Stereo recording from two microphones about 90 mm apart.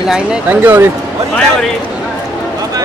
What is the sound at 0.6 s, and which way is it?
Speech, 25° right (ahead or behind).